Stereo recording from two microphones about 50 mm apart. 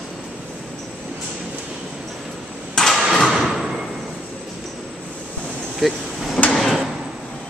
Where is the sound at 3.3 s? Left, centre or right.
Centre.